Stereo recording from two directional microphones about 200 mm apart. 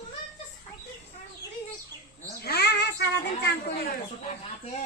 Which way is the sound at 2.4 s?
55° left (ahead or behind).